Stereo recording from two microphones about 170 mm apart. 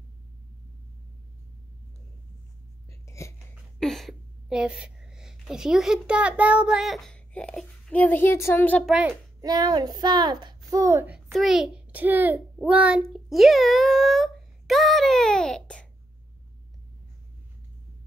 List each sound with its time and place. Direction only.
2.9 s hiccup: 15° left (ahead or behind)
3.8 s a woman's voice: centre (ahead or behind)
9.4 s a child's voice: 20° right (ahead or behind)
11.3 s a child's voice: centre (ahead or behind)